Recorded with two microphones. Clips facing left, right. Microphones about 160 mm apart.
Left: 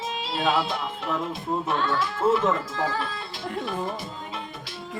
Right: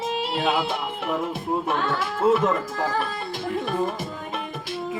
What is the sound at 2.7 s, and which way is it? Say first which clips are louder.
Speech: right 2 dB; 55° right (ahead or behind).